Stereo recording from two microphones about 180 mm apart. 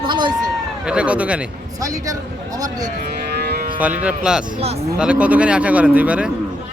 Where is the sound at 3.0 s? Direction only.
60° right (ahead or behind).